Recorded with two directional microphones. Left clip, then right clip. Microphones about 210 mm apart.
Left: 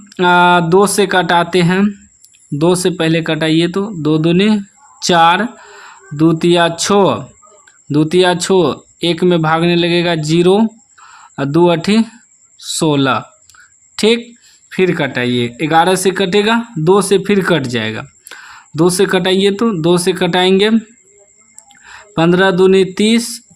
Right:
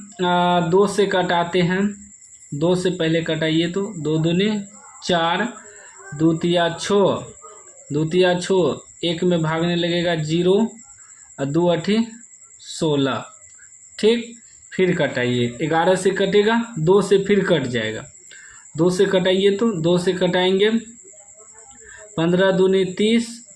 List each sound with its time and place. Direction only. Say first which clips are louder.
0.2 s speech: left 9 dB; 45° left (ahead or behind)
22.1 s speech: left 6 dB; 45° left (ahead or behind)